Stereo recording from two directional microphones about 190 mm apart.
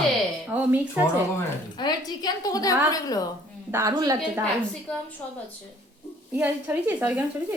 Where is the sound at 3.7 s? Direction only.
20° right (ahead or behind).